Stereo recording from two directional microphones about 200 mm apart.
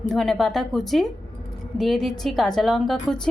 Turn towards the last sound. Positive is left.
turn(degrees=5)  # may be behind; listen again after turning